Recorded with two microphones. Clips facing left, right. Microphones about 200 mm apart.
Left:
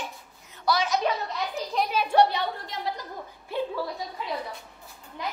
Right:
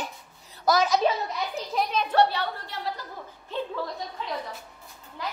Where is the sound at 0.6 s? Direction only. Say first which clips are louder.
Right 3 dB; 40° right (ahead or behind).